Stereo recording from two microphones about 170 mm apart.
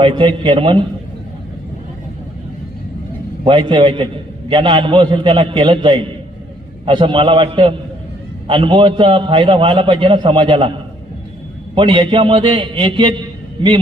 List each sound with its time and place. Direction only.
0.0 s a man's voice: 30° right (ahead or behind)
3.4 s a man's voice: 25° right (ahead or behind)
11.7 s a man's voice: 30° right (ahead or behind)